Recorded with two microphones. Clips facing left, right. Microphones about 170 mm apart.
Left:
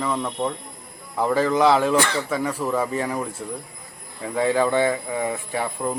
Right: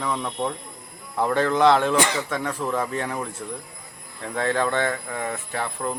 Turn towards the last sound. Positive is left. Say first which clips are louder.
# left 2 dB
turn(degrees=10)  # may be behind; listen again after turning